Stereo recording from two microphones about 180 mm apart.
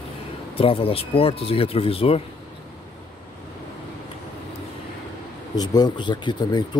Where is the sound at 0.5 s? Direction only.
30° left (ahead or behind).